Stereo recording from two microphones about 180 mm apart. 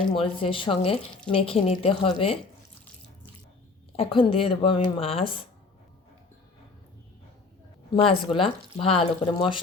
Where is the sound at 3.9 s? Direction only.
30° left (ahead or behind).